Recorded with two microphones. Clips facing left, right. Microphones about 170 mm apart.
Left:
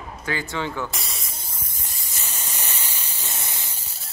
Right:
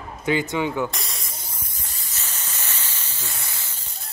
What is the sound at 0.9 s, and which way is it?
Spray, centre (ahead or behind).